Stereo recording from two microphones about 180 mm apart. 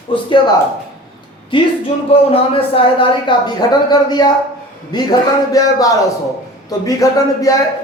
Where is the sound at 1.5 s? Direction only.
30° left (ahead or behind).